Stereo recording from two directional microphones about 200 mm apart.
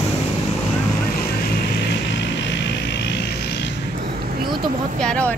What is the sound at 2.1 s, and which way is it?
Vehicle, 60° left (ahead or behind).